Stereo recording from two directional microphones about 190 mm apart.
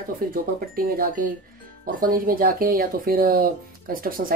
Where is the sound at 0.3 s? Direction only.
50° right (ahead or behind).